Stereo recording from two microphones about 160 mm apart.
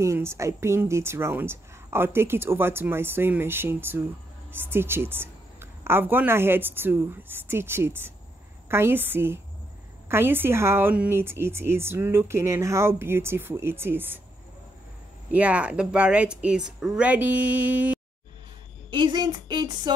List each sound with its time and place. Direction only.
0.0 s a woman's voice: 15° right (ahead or behind)
15.3 s a woman's voice: 10° right (ahead or behind)
18.9 s speech: 30° right (ahead or behind)